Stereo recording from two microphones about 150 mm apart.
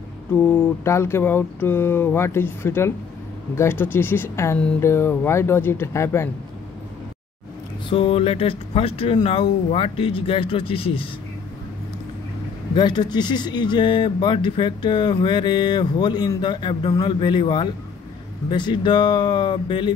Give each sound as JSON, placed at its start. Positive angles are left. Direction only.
{"t": 0.3, "sound": "speech", "side_deg": 15}
{"t": 7.9, "sound": "speech", "side_deg": 40}
{"t": 12.7, "sound": "speech", "side_deg": 30}